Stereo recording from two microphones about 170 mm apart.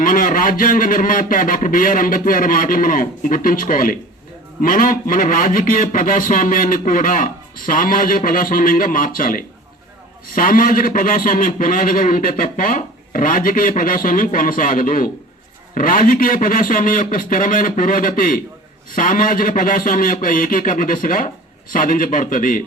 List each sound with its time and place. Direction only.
0.0 s a man's voice: 55° left (ahead or behind)